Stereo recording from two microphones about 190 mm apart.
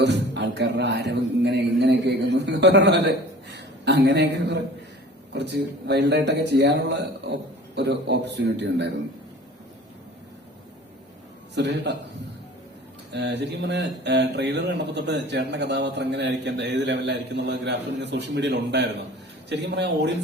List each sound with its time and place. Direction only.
0.0 s a man's voice: 65° right (ahead or behind)
11.5 s speech: 65° right (ahead or behind)
13.1 s speech: 65° right (ahead or behind)